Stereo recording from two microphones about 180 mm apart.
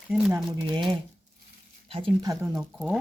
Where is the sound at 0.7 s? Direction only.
25° right (ahead or behind).